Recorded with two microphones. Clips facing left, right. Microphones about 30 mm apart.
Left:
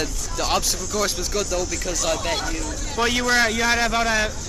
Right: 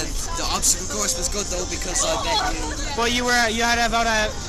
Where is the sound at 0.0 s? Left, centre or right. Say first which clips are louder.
Left 2 dB; centre.